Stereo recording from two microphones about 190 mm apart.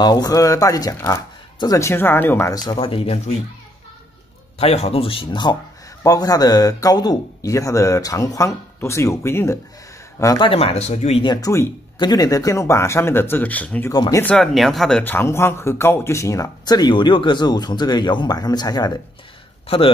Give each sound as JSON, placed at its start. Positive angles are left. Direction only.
{"t": 0.0, "sound": "speech", "side_deg": 20}
{"t": 4.6, "sound": "speech", "side_deg": 35}
{"t": 10.2, "sound": "speech", "side_deg": 25}
{"t": 11.4, "sound": "speech", "side_deg": 15}
{"t": 13.9, "sound": "speech", "side_deg": 20}
{"t": 14.2, "sound": "speech", "side_deg": 0}